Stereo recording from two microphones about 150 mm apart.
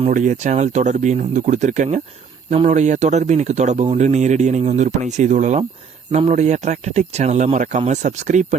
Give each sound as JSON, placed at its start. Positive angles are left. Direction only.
{"t": 0.1, "sound": "speech", "side_deg": -60}